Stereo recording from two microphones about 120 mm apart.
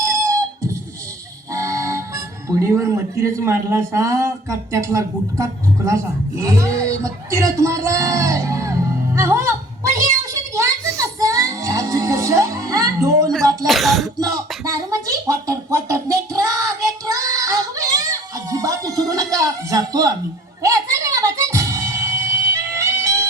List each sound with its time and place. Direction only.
0.1 s music: 25° right (ahead or behind)
1.5 s speech: 25° right (ahead or behind)
9.1 s a sound: 25° right (ahead or behind)
13.7 s throat clearing: centre (ahead or behind)
14.2 s a sound: 30° right (ahead or behind)
20.6 s music: 30° right (ahead or behind)